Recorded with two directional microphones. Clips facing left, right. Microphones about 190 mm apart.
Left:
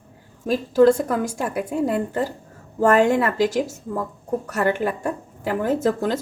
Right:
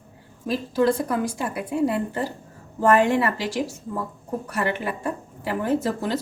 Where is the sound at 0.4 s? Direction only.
45° left (ahead or behind).